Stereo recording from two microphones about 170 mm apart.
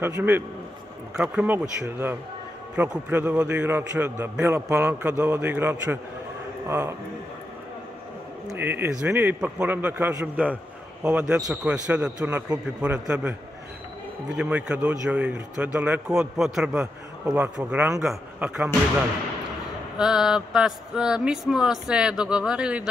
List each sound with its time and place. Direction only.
0.0 s a man's voice: 10° right (ahead or behind)
8.5 s a man's voice: 10° right (ahead or behind)
14.3 s a man's voice: 5° right (ahead or behind)
20.0 s a man's voice: centre (ahead or behind)